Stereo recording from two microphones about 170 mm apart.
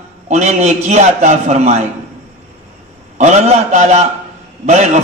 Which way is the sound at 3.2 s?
45° right (ahead or behind).